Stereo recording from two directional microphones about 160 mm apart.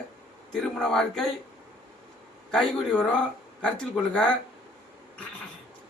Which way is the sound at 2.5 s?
5° left (ahead or behind).